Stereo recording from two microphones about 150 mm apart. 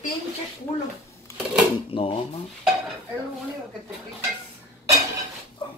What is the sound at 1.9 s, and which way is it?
Speech, 40° left (ahead or behind).